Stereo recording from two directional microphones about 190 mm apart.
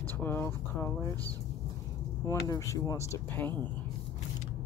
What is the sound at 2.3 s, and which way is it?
Speech, 15° left (ahead or behind).